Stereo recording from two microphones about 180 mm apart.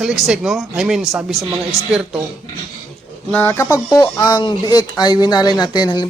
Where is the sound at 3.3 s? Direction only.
10° left (ahead or behind).